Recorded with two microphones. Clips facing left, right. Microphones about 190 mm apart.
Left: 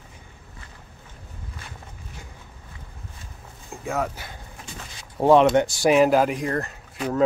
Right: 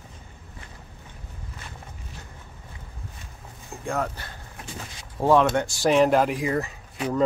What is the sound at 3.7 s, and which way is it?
Speech, centre (ahead or behind).